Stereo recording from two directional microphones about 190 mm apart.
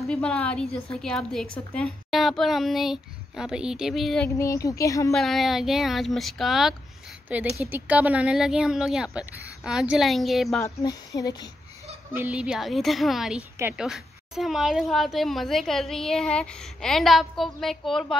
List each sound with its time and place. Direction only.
0.0 s a woman's voice: 5° left (ahead or behind)
4.4 s speech: 15° left (ahead or behind)
5.1 s a woman's voice: centre (ahead or behind)
10.6 s speech: 20° left (ahead or behind)
12.1 s a woman's voice: 5° right (ahead or behind)